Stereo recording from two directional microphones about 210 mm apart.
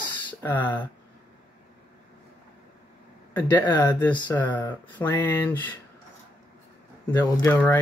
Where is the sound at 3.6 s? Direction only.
20° left (ahead or behind).